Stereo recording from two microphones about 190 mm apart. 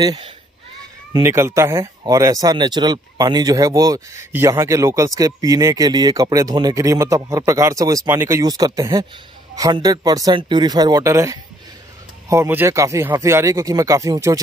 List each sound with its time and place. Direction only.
0.0 s speech: 20° right (ahead or behind)